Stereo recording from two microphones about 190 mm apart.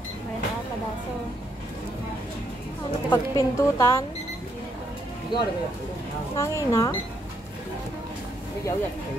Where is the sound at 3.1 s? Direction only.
20° left (ahead or behind).